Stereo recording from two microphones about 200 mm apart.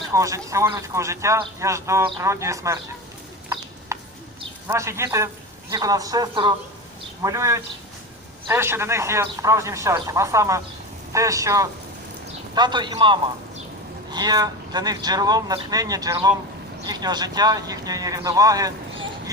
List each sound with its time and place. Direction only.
0.1 s a man's voice: 15° right (ahead or behind)
3.9 s a sound: 15° right (ahead or behind)
4.7 s a man's voice: 15° right (ahead or behind)